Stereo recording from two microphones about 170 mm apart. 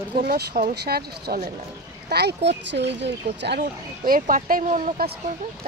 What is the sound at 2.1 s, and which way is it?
Speech, 80° right.